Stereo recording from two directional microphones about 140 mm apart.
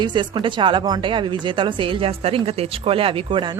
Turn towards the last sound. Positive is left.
turn(degrees=-40)  # may be behind; listen again after turning